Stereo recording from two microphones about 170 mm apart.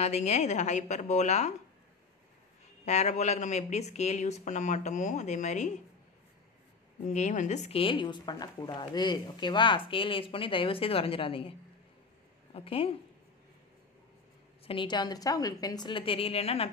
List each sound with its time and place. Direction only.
0.0 s speech: 40° left (ahead or behind)
2.8 s speech: 40° left (ahead or behind)
7.1 s a woman's voice: 45° left (ahead or behind)
12.5 s a woman's voice: 35° left (ahead or behind)
14.7 s a woman's voice: 25° left (ahead or behind)